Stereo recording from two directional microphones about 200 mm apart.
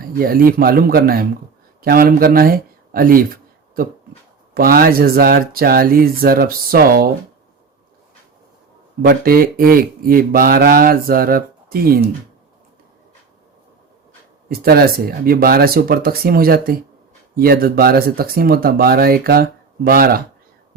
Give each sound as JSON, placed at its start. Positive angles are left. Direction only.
{"t": 0.0, "sound": "speech", "side_deg": -45}
{"t": 4.5, "sound": "speech", "side_deg": -45}
{"t": 9.0, "sound": "speech", "side_deg": -45}
{"t": 14.6, "sound": "speech", "side_deg": -50}